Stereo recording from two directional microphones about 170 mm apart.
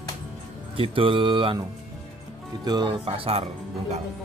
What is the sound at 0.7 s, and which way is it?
Speech, 30° right (ahead or behind).